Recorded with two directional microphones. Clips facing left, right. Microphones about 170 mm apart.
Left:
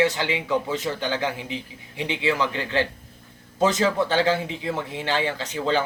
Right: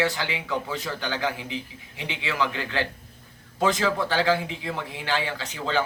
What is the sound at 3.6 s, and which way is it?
Speech, 20° left (ahead or behind).